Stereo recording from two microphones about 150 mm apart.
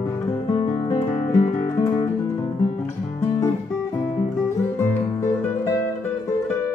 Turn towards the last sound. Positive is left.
turn(degrees=20)  # may be behind; listen again after turning